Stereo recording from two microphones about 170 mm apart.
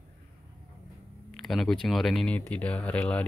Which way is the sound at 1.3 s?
Centre (ahead or behind).